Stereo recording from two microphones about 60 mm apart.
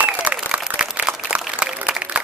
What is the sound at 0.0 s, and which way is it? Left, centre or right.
Applause, right.